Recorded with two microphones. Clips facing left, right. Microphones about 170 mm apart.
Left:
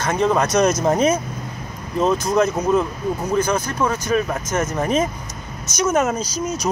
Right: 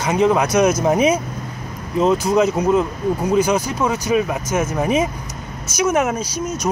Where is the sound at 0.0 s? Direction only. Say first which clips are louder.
Right 2 dB; 10° right (ahead or behind).